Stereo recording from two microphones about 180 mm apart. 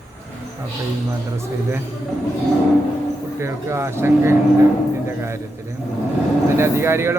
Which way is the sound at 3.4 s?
15° right (ahead or behind).